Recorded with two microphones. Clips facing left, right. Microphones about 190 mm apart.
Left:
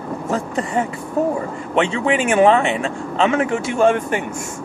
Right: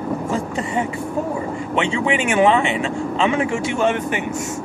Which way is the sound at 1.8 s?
40° left (ahead or behind).